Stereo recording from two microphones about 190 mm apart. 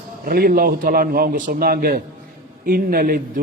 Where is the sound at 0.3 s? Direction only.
50° right (ahead or behind).